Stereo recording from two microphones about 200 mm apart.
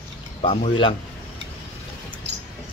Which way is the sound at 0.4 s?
30° left (ahead or behind).